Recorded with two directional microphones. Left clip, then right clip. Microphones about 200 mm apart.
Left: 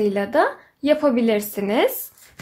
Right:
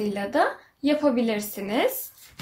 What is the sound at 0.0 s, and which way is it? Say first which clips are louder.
A woman's voice: left 5 dB; 55° left (ahead or behind).